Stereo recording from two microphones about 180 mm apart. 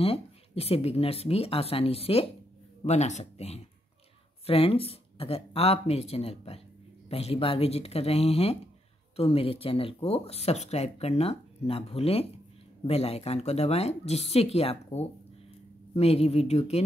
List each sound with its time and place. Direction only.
0.0 s speech: 35° left (ahead or behind)